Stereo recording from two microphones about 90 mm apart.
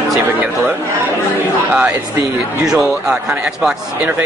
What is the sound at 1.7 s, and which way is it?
Speech, 15° right (ahead or behind).